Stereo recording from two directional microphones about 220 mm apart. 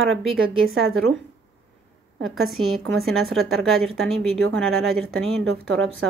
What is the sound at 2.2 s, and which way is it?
A woman's voice, centre (ahead or behind).